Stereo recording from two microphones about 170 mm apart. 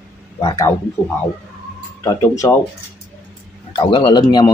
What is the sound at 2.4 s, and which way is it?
Speech, 20° left (ahead or behind).